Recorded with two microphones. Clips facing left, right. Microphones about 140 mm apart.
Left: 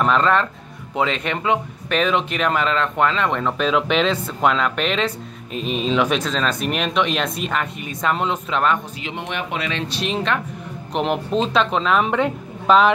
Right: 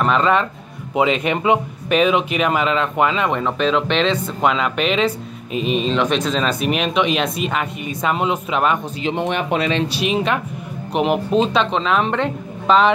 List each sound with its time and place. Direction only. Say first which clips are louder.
0.0 s speech: right 1 dB; 5° right (ahead or behind)
9.0 s speech: right 7 dB; 35° right (ahead or behind)
9.9 s speech: right 3 dB; 5° right (ahead or behind)